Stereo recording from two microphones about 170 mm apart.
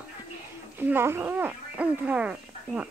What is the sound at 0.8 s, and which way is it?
Speech, 15° right (ahead or behind).